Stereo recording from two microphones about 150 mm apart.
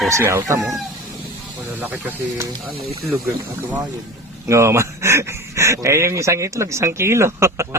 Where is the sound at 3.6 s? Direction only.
10° right (ahead or behind).